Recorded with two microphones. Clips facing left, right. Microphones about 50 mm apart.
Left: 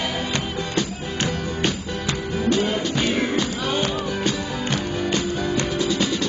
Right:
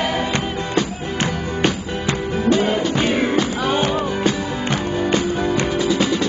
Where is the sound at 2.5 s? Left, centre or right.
Centre.